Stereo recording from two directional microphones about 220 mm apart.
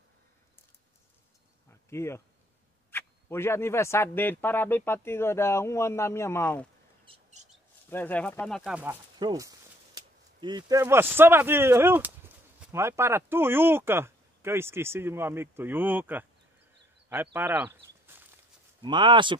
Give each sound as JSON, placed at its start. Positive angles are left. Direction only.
{"t": 1.7, "sound": "insect", "side_deg": 10}
{"t": 2.9, "sound": "speech", "side_deg": 10}
{"t": 7.1, "sound": "mouse", "side_deg": -25}
{"t": 7.9, "sound": "speech", "side_deg": 10}
{"t": 9.2, "sound": "speech", "side_deg": -15}
{"t": 18.8, "sound": "speech", "side_deg": -20}